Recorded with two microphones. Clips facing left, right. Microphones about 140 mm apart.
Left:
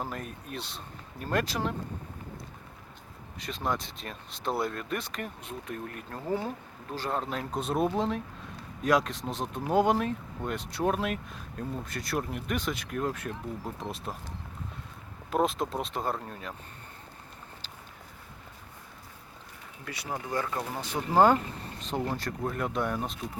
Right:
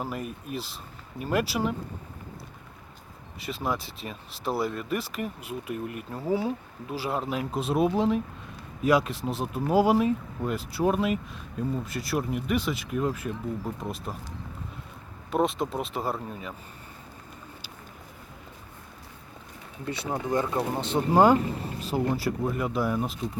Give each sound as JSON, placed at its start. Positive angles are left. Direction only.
{"t": 0.0, "sound": "speech", "side_deg": -5}
{"t": 3.4, "sound": "speech", "side_deg": -5}
{"t": 19.8, "sound": "speech", "side_deg": -25}
{"t": 21.1, "sound": "speech", "side_deg": -10}